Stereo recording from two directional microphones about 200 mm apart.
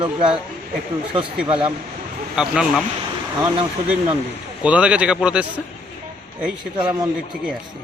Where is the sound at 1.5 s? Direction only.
25° right (ahead or behind).